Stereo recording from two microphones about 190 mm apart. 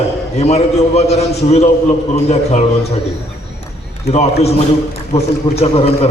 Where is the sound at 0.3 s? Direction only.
35° left (ahead or behind).